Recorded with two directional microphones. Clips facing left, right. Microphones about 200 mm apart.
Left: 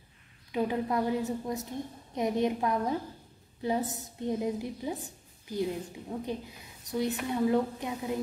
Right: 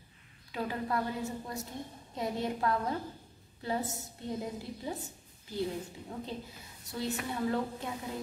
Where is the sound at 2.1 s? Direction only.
20° left (ahead or behind).